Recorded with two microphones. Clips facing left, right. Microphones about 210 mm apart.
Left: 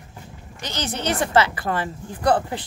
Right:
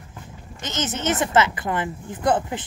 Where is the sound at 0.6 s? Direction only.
20° right (ahead or behind).